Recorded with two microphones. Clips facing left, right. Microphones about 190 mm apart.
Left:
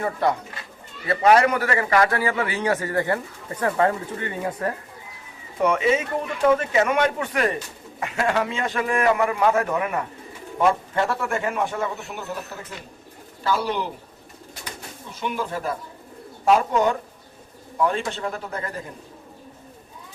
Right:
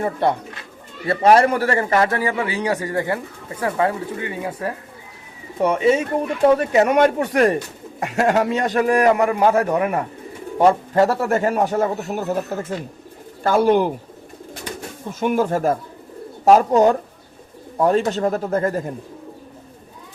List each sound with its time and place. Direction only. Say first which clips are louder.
0.0 s a man's voice: right 3 dB; 30° right (ahead or behind); by 4.7 s 10° right (ahead or behind)
5.5 s a man's voice: right 4 dB; 35° right (ahead or behind); by 13.9 s 50° right (ahead or behind)
15.2 s a man's voice: right 9 dB; 45° right (ahead or behind)